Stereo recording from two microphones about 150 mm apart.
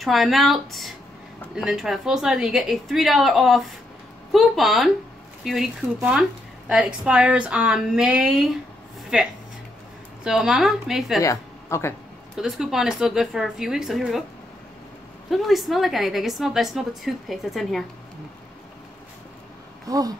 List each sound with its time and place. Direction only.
0.0 s a woman's voice: centre (ahead or behind)
6.7 s a woman's voice: 5° right (ahead or behind)
11.2 s speech: 20° left (ahead or behind)
12.4 s a woman's voice: 5° right (ahead or behind)
15.2 s a woman's voice: centre (ahead or behind)
19.9 s owl: 25° right (ahead or behind)